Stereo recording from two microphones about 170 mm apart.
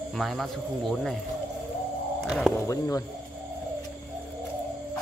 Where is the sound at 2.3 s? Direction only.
Centre (ahead or behind).